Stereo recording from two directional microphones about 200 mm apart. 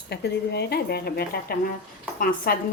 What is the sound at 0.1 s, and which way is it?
Speech, 55° left (ahead or behind).